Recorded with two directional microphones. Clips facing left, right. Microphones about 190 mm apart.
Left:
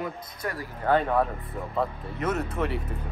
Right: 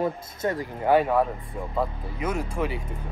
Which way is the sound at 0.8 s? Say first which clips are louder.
Right 3 dB; 10° right (ahead or behind).